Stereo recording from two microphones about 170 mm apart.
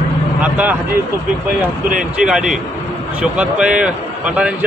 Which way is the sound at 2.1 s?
5° right (ahead or behind).